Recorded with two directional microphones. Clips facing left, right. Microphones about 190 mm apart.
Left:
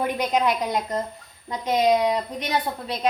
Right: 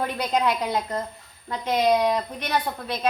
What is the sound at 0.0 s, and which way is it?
A woman's voice, 15° left (ahead or behind).